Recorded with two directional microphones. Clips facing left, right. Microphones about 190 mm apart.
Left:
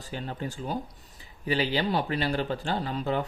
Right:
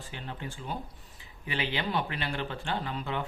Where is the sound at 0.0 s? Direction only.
40° left (ahead or behind).